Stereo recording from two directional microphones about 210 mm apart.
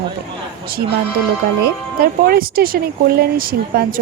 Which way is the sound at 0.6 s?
45° right (ahead or behind).